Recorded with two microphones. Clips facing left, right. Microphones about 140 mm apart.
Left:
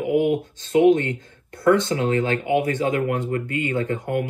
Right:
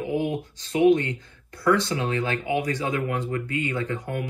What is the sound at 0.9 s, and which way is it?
Speech, 50° left (ahead or behind).